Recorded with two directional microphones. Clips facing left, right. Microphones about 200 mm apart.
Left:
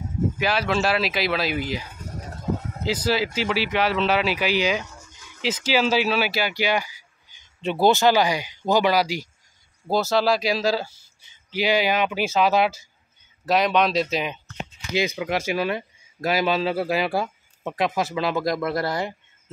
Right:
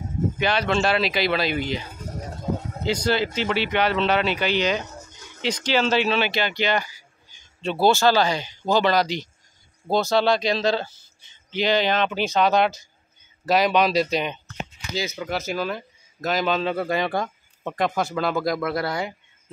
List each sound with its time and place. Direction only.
0.4 s speech: 5° left (ahead or behind)
4.8 s a sound: 40° right (ahead or behind)
5.4 s a man's voice: 5° left (ahead or behind)
15.0 s speech: 15° left (ahead or behind)